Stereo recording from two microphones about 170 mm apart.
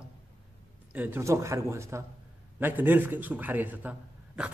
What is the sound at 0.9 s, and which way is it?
A man's voice, 10° right (ahead or behind).